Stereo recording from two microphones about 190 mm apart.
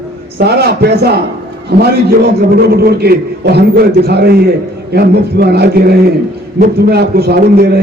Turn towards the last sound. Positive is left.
turn(degrees=-55)  # may be behind; listen again after turning